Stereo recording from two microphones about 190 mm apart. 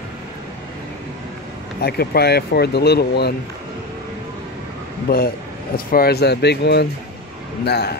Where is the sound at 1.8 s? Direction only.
55° left (ahead or behind).